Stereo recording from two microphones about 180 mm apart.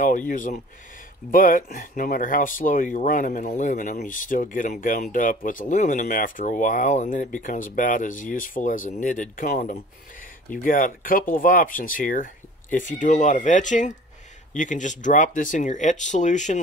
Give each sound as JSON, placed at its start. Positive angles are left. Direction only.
{"t": 0.3, "sound": "speech", "side_deg": 50}